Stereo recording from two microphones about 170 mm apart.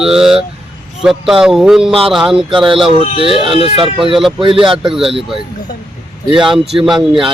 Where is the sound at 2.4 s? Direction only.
30° right (ahead or behind).